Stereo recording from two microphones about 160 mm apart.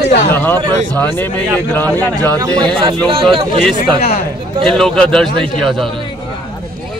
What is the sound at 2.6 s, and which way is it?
A man's voice, 30° right (ahead or behind).